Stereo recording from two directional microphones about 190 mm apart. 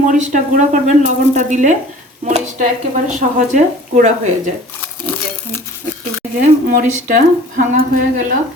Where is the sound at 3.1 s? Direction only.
40° right (ahead or behind).